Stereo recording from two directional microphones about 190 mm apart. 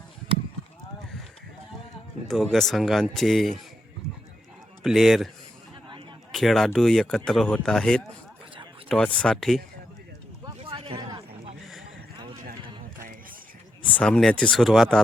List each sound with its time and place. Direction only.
2.2 s speech: centre (ahead or behind)
4.8 s speech: centre (ahead or behind)
6.3 s speech: centre (ahead or behind)
10.4 s a sound: 30° right (ahead or behind)
13.8 s speech: 5° left (ahead or behind)